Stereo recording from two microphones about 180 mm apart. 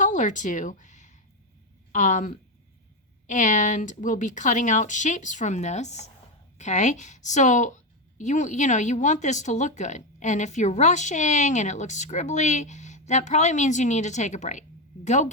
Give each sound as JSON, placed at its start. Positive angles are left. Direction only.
{"t": 0.0, "sound": "speech", "side_deg": 45}